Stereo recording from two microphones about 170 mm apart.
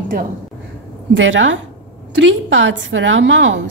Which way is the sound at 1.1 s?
90° right.